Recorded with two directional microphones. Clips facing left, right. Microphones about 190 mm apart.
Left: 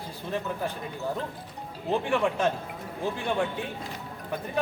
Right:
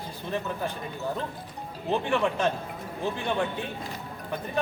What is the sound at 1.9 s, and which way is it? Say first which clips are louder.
A man's voice: even; 10° left (ahead or behind).